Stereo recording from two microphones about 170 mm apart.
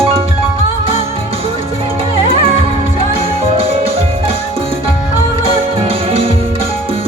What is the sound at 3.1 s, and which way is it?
Music, 35° right (ahead or behind).